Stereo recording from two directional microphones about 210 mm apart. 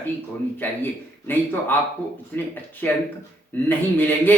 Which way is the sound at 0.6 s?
10° left (ahead or behind).